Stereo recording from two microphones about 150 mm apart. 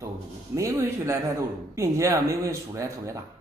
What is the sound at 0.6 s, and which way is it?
Speech, 20° right (ahead or behind).